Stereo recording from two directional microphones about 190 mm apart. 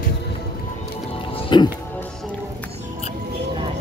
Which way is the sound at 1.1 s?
30° left (ahead or behind).